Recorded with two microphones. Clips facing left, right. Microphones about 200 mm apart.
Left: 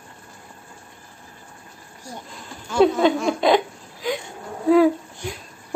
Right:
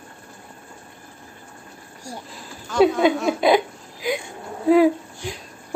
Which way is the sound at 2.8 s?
10° right (ahead or behind).